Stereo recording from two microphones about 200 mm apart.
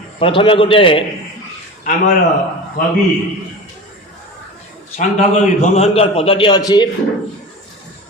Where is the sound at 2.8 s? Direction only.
40° left (ahead or behind).